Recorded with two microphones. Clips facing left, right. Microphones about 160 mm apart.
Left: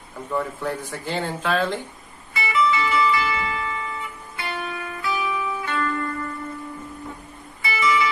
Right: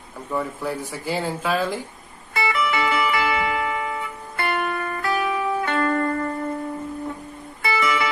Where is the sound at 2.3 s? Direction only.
60° right (ahead or behind).